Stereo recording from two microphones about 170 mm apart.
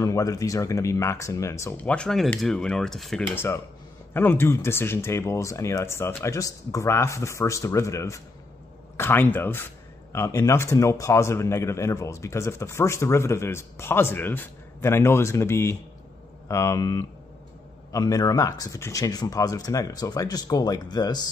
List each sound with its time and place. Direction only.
0.0 s a man's voice: 20° left (ahead or behind)